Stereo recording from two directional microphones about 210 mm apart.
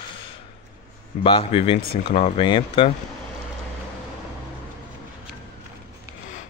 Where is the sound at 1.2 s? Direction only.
25° left (ahead or behind).